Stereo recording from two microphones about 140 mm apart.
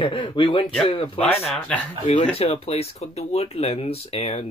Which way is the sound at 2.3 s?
45° left (ahead or behind).